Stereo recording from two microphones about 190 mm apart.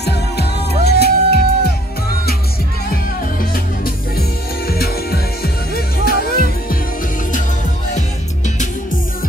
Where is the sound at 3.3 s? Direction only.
50° left (ahead or behind).